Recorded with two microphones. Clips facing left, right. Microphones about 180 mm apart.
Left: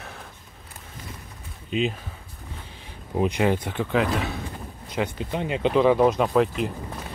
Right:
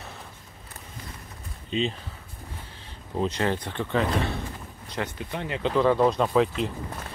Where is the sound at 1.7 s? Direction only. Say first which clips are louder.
Left 2 dB; 5° left (ahead or behind).